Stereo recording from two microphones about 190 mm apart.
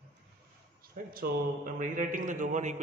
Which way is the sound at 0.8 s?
50° right (ahead or behind).